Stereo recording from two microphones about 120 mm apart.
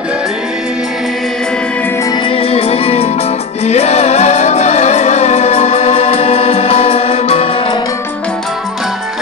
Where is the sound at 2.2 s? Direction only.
55° left (ahead or behind).